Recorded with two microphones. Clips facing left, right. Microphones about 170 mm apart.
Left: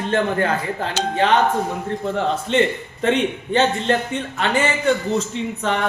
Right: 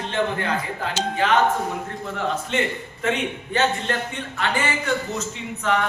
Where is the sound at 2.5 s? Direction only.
30° left (ahead or behind).